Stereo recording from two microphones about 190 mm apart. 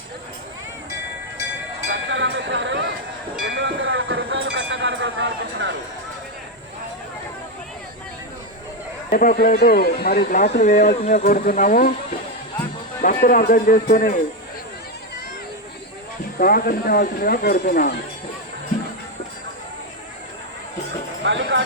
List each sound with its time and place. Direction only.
1.9 s chink: 75° right (ahead or behind)
3.4 s a sound: 70° right (ahead or behind)
9.0 s speech: 50° left (ahead or behind)
10.6 s speech: 40° left (ahead or behind)
13.0 s speech: 45° left (ahead or behind)
16.4 s speech: 50° left (ahead or behind)
21.2 s clip-clop: 75° right (ahead or behind)